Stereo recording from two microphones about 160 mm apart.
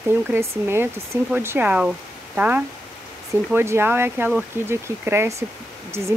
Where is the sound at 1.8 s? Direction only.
10° right (ahead or behind).